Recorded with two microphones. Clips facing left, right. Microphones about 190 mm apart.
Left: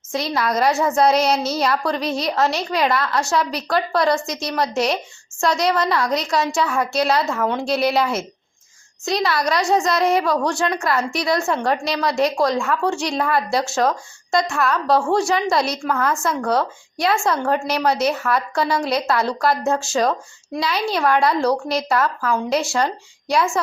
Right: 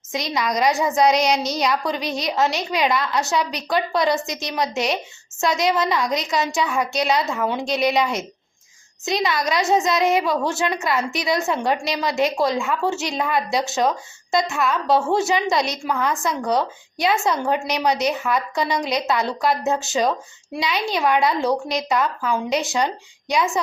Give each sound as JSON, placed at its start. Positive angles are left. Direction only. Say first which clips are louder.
{"t": 0.3, "sound": "a woman's voice", "louder": "left 1 dB", "side_deg": 5}
{"t": 0.7, "sound": "speech", "louder": "left 2 dB", "side_deg": -15}
{"t": 0.9, "sound": "a woman's voice", "louder": "even", "side_deg": 0}